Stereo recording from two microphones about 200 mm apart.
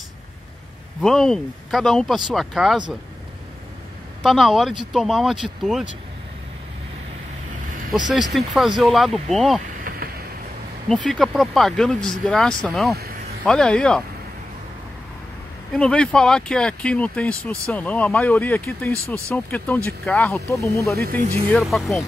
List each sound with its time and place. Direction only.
1.0 s speech: centre (ahead or behind)
4.2 s speech: centre (ahead or behind)
8.1 s speech: centre (ahead or behind)
10.9 s speech: 5° left (ahead or behind)
15.7 s speech: 5° left (ahead or behind)
21.2 s speech: 30° right (ahead or behind)
21.5 s speech: 5° left (ahead or behind)